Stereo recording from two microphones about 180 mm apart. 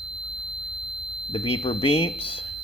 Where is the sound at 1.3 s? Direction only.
30° left (ahead or behind).